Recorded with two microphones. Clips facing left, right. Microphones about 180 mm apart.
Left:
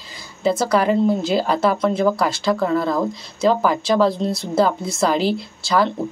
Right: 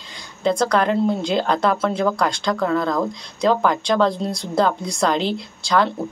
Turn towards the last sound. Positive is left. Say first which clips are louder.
# even
turn(degrees=5)  # may be behind; listen again after turning